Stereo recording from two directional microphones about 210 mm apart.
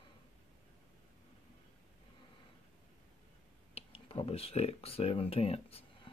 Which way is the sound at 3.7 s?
25° left (ahead or behind).